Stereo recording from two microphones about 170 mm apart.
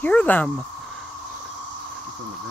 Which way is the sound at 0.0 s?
10° left (ahead or behind).